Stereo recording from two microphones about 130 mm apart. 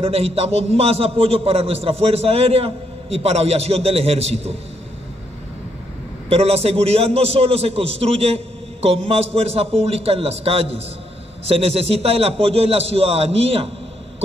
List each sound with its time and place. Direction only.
0.0 s a man's voice: 50° right (ahead or behind)
6.2 s a man's voice: 50° right (ahead or behind)